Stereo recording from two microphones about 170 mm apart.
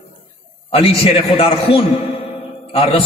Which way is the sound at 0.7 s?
35° left (ahead or behind).